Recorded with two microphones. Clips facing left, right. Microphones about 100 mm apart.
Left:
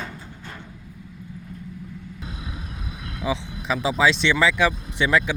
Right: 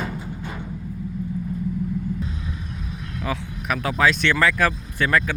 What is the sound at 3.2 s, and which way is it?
Speech, 15° left (ahead or behind).